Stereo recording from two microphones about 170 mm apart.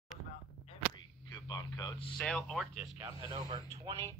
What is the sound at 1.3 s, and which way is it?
Speech, 25° left (ahead or behind).